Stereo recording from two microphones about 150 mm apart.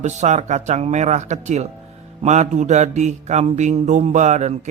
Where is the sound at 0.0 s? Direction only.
50° right (ahead or behind).